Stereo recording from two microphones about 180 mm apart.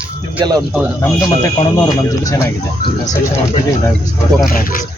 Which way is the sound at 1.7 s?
20° left (ahead or behind).